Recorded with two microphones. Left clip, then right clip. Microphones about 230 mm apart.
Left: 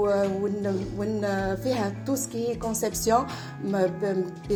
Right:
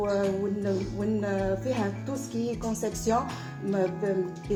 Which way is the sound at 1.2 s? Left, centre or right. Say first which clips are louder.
Left 2 dB; left.